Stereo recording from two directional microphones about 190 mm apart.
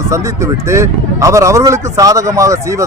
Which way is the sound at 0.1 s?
15° right (ahead or behind).